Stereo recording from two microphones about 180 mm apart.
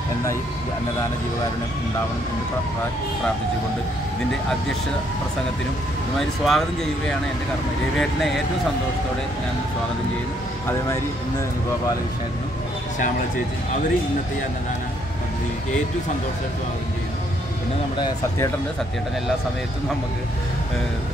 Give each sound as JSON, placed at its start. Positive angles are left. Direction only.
{"t": 6.1, "sound": "speech", "side_deg": 0}
{"t": 17.9, "sound": "speech", "side_deg": 25}